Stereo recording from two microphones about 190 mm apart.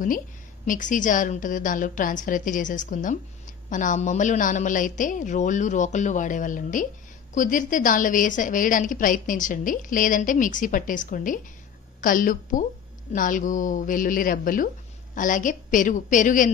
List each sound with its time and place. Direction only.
0.7 s a woman's voice: 40° left (ahead or behind)